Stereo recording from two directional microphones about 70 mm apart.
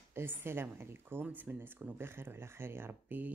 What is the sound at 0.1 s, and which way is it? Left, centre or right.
Speech, right.